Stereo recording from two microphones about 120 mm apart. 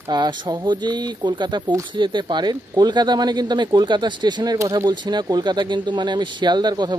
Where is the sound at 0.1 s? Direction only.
35° right (ahead or behind).